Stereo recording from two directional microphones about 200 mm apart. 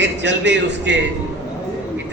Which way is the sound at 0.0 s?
60° right (ahead or behind).